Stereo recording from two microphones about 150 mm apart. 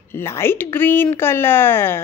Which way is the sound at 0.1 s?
15° left (ahead or behind).